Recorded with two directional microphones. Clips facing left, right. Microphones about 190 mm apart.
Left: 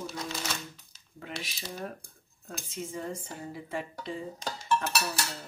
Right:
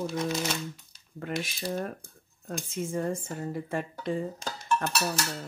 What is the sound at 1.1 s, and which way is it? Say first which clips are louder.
Speech: right 7 dB; 50° right (ahead or behind).